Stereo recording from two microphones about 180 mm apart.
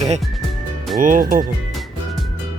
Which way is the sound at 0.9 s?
50° right (ahead or behind).